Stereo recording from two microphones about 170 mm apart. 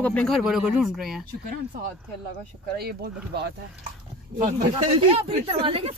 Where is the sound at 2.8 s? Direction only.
70° right (ahead or behind).